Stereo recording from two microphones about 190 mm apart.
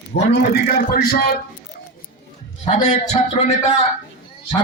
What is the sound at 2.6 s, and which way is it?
A man's voice, 35° left (ahead or behind).